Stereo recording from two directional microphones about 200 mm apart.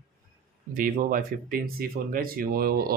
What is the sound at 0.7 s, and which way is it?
Speech, 45° right (ahead or behind).